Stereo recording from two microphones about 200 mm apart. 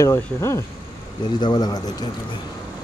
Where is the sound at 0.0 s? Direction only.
15° left (ahead or behind).